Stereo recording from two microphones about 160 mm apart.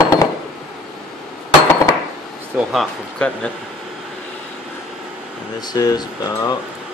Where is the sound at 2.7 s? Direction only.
5° left (ahead or behind).